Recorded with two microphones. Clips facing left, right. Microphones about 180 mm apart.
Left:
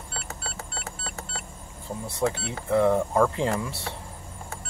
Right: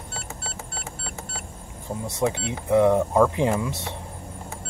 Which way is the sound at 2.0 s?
15° right (ahead or behind).